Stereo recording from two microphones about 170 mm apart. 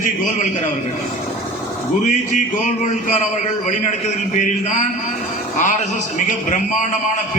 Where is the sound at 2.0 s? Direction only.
45° left (ahead or behind).